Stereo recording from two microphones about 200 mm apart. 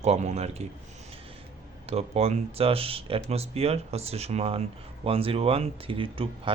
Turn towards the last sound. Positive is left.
turn(degrees=-25)  # may be behind; listen again after turning